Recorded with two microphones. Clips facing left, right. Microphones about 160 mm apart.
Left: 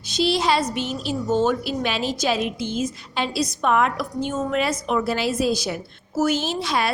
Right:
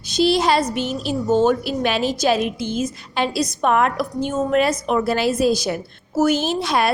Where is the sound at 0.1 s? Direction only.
45° right (ahead or behind).